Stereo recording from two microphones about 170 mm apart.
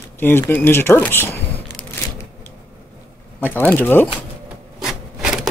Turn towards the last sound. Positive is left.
turn(degrees=-5)  # may be behind; listen again after turning